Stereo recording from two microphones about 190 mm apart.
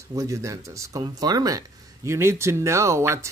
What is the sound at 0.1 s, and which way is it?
Speech, 15° right (ahead or behind).